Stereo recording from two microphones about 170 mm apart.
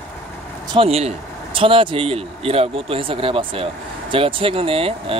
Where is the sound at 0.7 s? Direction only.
40° right (ahead or behind).